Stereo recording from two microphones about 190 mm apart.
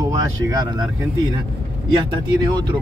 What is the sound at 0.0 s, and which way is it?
Speech, 20° right (ahead or behind).